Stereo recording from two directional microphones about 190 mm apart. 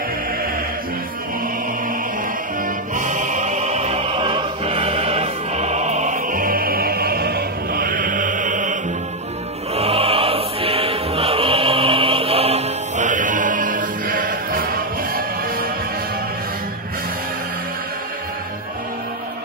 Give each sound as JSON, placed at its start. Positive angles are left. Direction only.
{"t": 2.9, "sound": "music", "side_deg": -40}
{"t": 9.8, "sound": "music", "side_deg": -30}